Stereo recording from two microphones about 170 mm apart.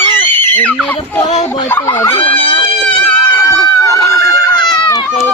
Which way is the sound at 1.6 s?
15° left (ahead or behind).